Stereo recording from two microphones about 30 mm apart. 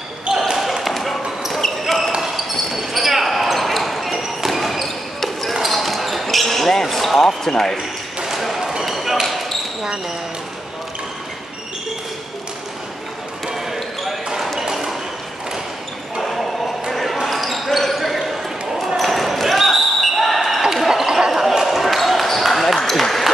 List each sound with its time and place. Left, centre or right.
0.3 s basketball bounce: centre
0.8 s basketball bounce: centre
2.3 s basketball bounce: centre
8.5 s basketball bounce: centre
14.6 s a sound: centre
16.2 s basketball bounce: centre
20.7 s a sound: centre
21.6 s basketball bounce: centre
22.8 s ping: centre